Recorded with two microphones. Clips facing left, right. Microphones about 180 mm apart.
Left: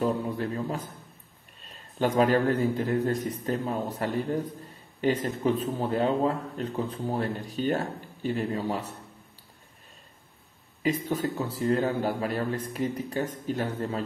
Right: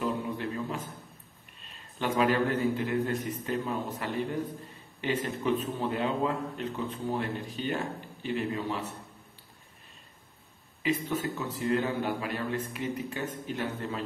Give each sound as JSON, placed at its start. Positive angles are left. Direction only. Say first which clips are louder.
{"t": 0.0, "sound": "a man's voice", "louder": "left 4 dB", "side_deg": 40}
{"t": 2.0, "sound": "speech", "louder": "left 4 dB", "side_deg": 40}
{"t": 10.8, "sound": "speech", "louder": "left 3 dB", "side_deg": 40}